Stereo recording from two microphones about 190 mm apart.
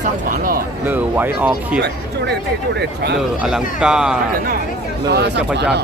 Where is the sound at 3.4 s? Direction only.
5° right (ahead or behind).